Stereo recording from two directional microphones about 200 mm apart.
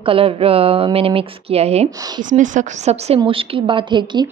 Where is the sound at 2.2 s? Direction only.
40° right (ahead or behind); by 4.2 s 25° right (ahead or behind).